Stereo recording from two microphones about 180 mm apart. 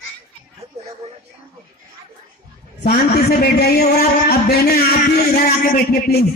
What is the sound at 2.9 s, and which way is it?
A man's voice, 60° left (ahead or behind).